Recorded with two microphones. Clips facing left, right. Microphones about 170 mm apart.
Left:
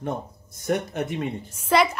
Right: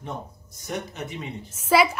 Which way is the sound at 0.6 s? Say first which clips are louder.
Left 7 dB; 55° left (ahead or behind).